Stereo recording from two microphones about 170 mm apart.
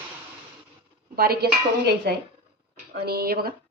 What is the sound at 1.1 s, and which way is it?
Speech, 65° right (ahead or behind).